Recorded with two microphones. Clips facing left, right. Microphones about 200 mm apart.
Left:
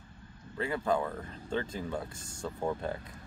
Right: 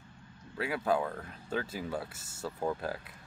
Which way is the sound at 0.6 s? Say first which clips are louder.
Even; 5° right (ahead or behind).